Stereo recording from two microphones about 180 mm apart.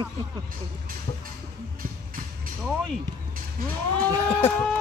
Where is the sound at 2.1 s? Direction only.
50° right (ahead or behind).